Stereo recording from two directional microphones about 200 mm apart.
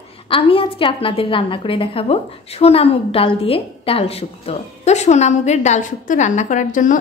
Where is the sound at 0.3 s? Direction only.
25° left (ahead or behind).